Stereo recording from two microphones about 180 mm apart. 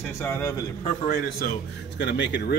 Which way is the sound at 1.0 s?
50° left (ahead or behind).